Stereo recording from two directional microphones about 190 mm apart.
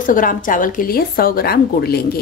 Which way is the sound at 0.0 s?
45° left (ahead or behind).